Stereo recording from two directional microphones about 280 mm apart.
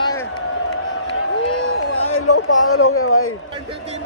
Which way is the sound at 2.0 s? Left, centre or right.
Left.